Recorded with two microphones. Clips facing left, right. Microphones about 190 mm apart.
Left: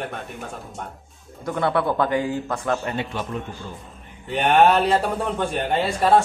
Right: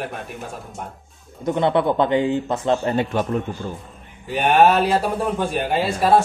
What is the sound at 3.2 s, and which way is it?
Speech, 50° right (ahead or behind).